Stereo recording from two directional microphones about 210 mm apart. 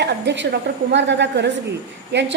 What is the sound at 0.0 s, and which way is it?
A woman's voice, 55° right (ahead or behind).